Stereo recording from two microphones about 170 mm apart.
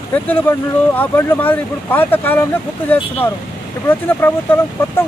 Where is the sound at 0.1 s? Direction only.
10° left (ahead or behind).